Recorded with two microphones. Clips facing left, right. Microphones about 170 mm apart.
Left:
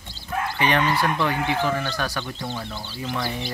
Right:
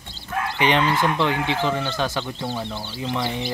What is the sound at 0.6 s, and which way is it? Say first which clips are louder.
Speech: right 2 dB; 20° right (ahead or behind).